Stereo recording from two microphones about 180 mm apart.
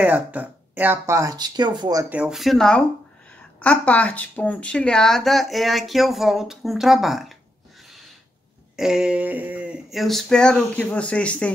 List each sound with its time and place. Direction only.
0.0 s speech: 10° right (ahead or behind)
2.0 s speech: 5° right (ahead or behind)
8.7 s speech: 5° right (ahead or behind)